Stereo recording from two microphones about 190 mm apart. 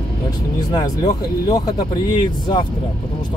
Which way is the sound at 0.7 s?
20° left (ahead or behind).